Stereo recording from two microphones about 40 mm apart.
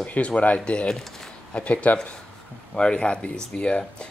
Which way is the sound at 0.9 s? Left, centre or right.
Centre.